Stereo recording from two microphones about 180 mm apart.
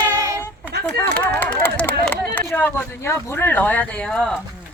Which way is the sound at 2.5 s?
10° left (ahead or behind).